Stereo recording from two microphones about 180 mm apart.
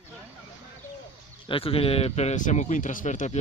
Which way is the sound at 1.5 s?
30° left (ahead or behind).